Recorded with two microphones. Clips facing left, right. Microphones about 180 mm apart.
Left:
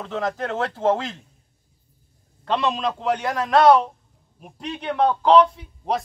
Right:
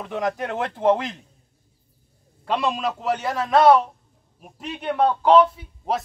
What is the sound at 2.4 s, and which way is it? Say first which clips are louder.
A man's voice: left 1 dB; 10° right (ahead or behind).